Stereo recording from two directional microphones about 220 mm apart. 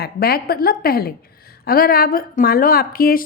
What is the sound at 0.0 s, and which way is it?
A woman's voice, 45° left (ahead or behind).